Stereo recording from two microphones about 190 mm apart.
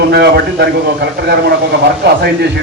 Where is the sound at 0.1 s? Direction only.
60° right (ahead or behind).